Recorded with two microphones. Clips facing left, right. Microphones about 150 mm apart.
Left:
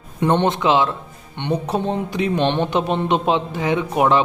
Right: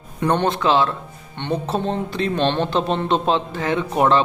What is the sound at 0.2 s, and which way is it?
Speech, 20° left (ahead or behind).